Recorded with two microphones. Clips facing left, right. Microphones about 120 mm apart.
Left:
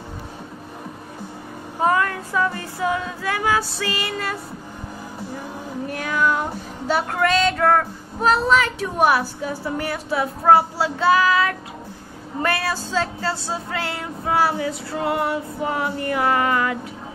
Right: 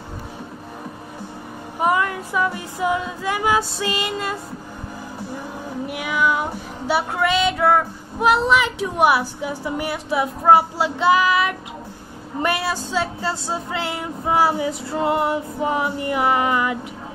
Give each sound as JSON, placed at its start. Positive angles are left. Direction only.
{"t": 1.8, "sound": "female singing", "side_deg": -15}
{"t": 5.9, "sound": "music", "side_deg": -10}
{"t": 6.9, "sound": "child singing", "side_deg": -10}
{"t": 13.3, "sound": "female singing", "side_deg": -20}